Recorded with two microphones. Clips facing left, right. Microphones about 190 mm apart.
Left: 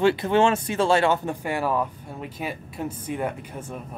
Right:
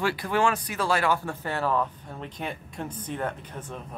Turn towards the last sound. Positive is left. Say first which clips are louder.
# left 3 dB
turn(degrees=10)  # may be behind; listen again after turning